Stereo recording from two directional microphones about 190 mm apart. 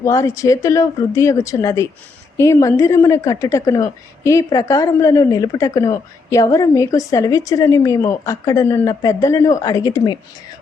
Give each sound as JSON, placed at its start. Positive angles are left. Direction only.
{"t": 0.0, "sound": "a woman's voice", "side_deg": 15}